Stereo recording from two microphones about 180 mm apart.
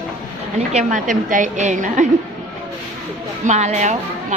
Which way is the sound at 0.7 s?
45° right (ahead or behind).